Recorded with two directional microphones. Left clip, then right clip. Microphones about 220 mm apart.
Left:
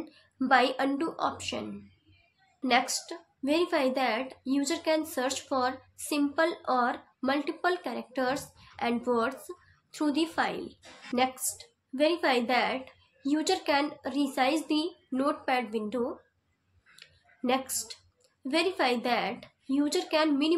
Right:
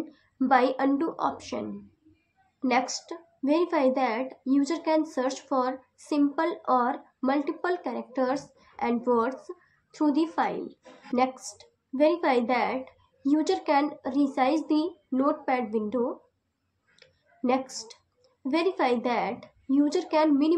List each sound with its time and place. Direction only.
0.1 s a woman's voice: 15° left (ahead or behind)
2.7 s a woman's voice: 15° left (ahead or behind)
16.9 s a sound: 15° left (ahead or behind)
18.5 s a woman's voice: 15° left (ahead or behind)